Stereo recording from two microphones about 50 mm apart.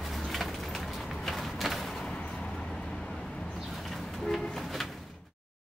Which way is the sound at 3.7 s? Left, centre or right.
Centre.